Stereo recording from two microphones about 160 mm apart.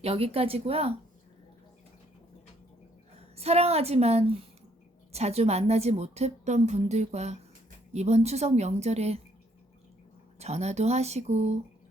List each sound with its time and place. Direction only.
0.0 s speech: 35° right (ahead or behind)
3.2 s a woman's voice: 40° right (ahead or behind)
10.3 s a woman's voice: 40° right (ahead or behind)